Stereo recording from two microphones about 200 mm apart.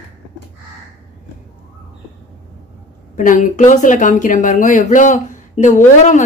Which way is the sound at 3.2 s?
40° left (ahead or behind).